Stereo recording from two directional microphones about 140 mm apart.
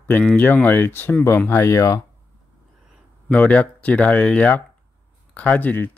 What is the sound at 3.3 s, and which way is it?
Speech, 10° left (ahead or behind).